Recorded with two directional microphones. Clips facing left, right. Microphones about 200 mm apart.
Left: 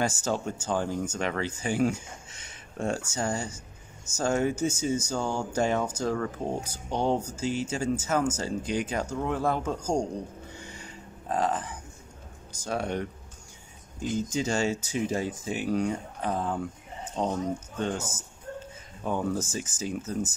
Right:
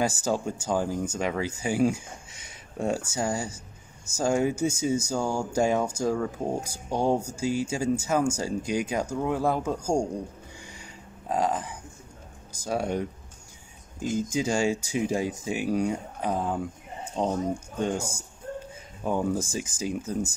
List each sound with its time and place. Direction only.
0.0 s speech: 10° right (ahead or behind)
10.7 s a sound: 10° right (ahead or behind)
12.6 s speech: 10° right (ahead or behind)
14.1 s speech: 10° right (ahead or behind)